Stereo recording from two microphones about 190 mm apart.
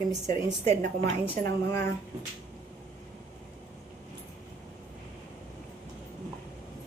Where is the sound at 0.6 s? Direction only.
35° right (ahead or behind).